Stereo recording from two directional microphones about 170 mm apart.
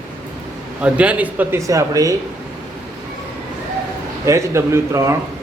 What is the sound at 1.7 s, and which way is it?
Speech, 20° right (ahead or behind).